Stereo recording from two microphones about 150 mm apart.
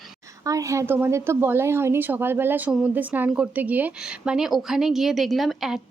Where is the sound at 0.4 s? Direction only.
20° right (ahead or behind).